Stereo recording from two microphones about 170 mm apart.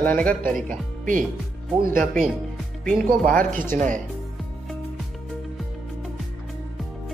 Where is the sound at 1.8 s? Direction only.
55° right (ahead or behind).